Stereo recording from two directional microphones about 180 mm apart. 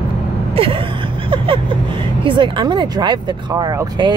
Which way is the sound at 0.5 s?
30° right (ahead or behind).